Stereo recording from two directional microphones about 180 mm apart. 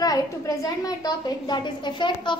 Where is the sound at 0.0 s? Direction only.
20° left (ahead or behind).